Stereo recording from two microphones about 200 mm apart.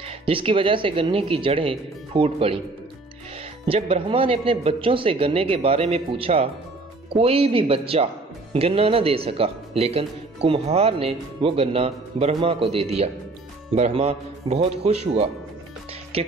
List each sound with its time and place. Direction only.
0.2 s speech: 25° right (ahead or behind)
3.6 s a man's voice: 30° right (ahead or behind)